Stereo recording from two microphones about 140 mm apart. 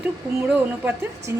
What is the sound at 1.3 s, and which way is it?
Speech, 20° right (ahead or behind).